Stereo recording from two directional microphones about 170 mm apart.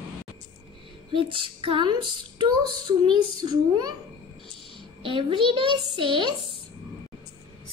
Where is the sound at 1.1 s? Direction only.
30° right (ahead or behind).